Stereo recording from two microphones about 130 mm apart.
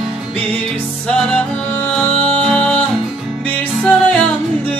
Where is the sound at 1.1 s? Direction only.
10° left (ahead or behind).